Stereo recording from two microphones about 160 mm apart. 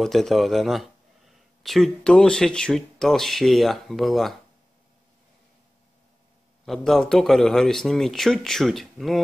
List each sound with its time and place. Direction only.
0.0 s a sound: centre (ahead or behind)
2.0 s a man's voice: 5° left (ahead or behind)
6.6 s a man's voice: centre (ahead or behind)